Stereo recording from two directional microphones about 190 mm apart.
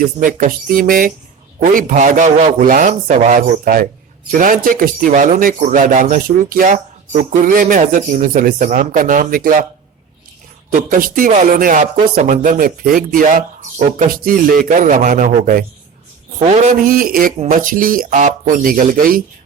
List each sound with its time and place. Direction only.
0.0 s speech: 45° right (ahead or behind)
10.7 s speech: 45° right (ahead or behind)